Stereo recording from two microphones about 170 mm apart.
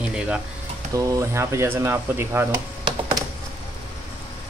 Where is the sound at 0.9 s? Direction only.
15° right (ahead or behind).